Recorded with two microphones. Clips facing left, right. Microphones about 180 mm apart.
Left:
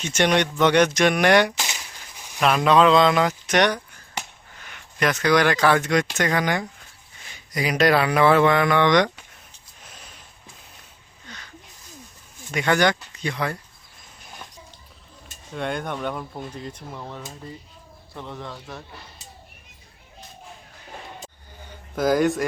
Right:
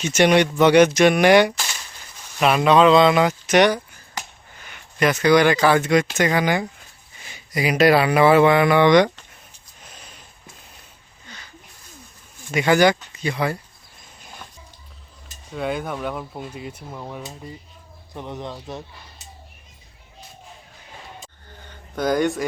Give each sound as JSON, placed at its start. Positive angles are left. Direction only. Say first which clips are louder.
{"t": 0.0, "sound": "speech", "louder": "right 4 dB", "side_deg": -5}
{"t": 1.5, "sound": "a sound", "louder": "left 1 dB", "side_deg": 15}
{"t": 2.4, "sound": "speech", "louder": "right 2 dB", "side_deg": -5}
{"t": 11.3, "sound": "a sound", "louder": "left 1 dB", "side_deg": 0}
{"t": 12.5, "sound": "speech", "louder": "right 4 dB", "side_deg": -5}
{"t": 15.5, "sound": "speech", "louder": "right 2 dB", "side_deg": -5}
{"t": 21.7, "sound": "speech", "louder": "left 1 dB", "side_deg": 5}